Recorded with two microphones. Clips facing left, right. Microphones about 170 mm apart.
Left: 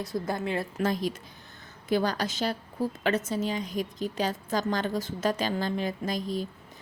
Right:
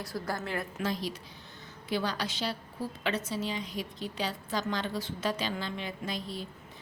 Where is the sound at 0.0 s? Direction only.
20° left (ahead or behind).